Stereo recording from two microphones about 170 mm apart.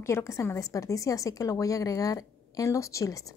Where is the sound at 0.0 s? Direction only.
15° left (ahead or behind).